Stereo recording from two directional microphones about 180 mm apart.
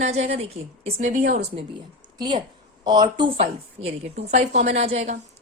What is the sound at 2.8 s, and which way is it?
A woman's voice, 25° right (ahead or behind).